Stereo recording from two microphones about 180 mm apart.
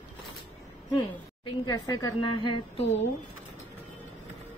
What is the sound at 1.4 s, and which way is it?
A woman's voice, 25° left (ahead or behind).